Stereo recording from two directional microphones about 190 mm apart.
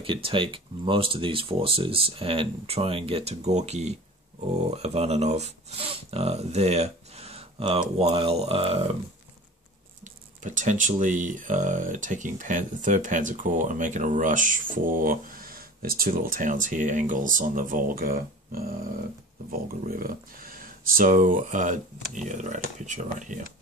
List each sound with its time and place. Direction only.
0.0 s speech: 30° right (ahead or behind)
10.4 s speech: 40° right (ahead or behind)